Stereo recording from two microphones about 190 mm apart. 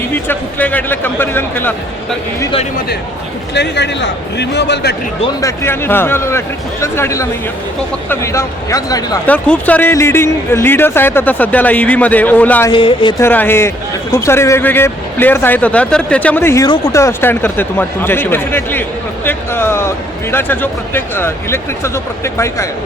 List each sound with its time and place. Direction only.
0.1 s speech: 10° left (ahead or behind)
3.5 s a man's voice: 65° left (ahead or behind)
5.4 s speech: 15° left (ahead or behind)
9.2 s speech: 10° left (ahead or behind)
12.7 s speech: 25° left (ahead or behind)
13.2 s speech: 10° left (ahead or behind)